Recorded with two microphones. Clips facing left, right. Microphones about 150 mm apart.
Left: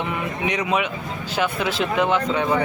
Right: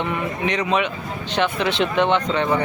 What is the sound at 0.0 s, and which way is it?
Speech, 10° left (ahead or behind).